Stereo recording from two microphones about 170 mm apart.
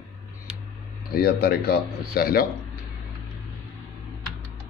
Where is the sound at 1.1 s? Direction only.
65° left (ahead or behind).